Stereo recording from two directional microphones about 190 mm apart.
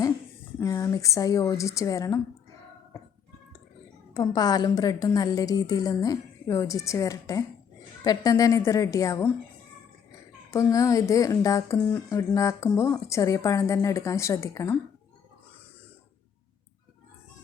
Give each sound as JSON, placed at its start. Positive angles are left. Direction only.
{"t": 0.6, "sound": "speech", "side_deg": 20}
{"t": 4.1, "sound": "a woman's voice", "side_deg": 20}
{"t": 10.5, "sound": "speech", "side_deg": 15}